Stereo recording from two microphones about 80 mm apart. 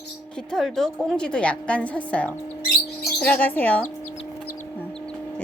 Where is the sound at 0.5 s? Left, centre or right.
Centre; by 3.8 s left.